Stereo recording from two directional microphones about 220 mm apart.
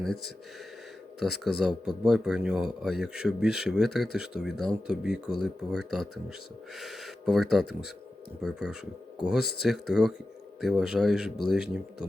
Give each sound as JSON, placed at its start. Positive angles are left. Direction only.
{"t": 1.5, "sound": "speech", "side_deg": 0}